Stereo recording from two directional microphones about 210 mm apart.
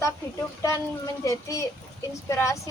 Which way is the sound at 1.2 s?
15° left (ahead or behind).